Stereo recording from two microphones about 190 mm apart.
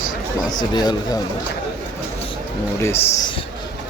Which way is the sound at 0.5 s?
20° left (ahead or behind).